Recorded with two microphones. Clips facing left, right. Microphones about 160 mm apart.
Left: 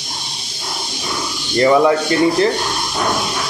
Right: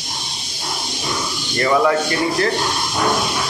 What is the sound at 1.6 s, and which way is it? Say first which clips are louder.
Speech: left 4 dB; 20° left (ahead or behind).